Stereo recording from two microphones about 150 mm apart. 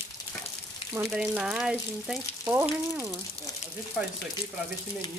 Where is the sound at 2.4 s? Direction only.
15° right (ahead or behind).